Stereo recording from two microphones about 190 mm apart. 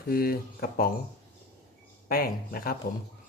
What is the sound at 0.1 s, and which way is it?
Speech, 50° left (ahead or behind).